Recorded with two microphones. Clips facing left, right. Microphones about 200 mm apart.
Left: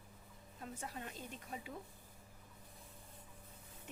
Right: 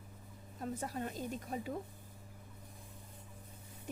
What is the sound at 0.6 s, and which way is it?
Speech, 40° right (ahead or behind).